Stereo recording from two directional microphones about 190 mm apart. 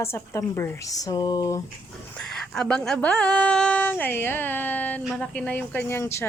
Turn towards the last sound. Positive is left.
turn(degrees=15)  # may be behind; listen again after turning